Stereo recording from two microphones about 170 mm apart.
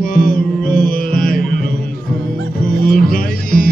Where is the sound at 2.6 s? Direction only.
55° left (ahead or behind).